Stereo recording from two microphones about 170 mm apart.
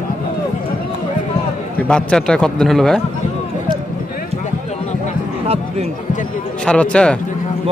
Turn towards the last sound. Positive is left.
turn(degrees=5)  # may be behind; listen again after turning